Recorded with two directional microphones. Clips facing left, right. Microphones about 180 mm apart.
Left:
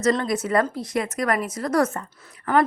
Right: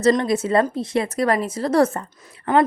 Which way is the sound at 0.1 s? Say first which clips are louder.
Right 4 dB; 25° right (ahead or behind).